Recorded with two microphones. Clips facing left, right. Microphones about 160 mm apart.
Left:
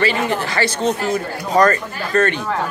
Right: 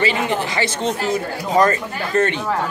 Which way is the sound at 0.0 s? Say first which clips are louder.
Left 1 dB; 20° right (ahead or behind).